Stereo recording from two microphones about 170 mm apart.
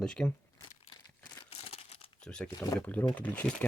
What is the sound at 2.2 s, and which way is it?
Speech, 5° left (ahead or behind).